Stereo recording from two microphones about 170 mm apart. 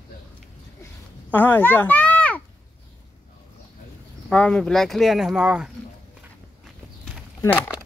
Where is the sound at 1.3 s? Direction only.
10° left (ahead or behind).